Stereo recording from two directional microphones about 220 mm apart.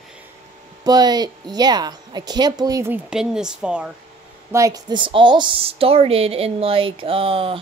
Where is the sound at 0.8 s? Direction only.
20° right (ahead or behind).